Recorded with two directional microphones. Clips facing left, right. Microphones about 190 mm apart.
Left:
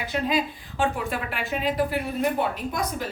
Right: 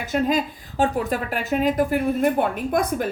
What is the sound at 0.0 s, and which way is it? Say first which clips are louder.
A woman's voice: right 4 dB; 45° right (ahead or behind).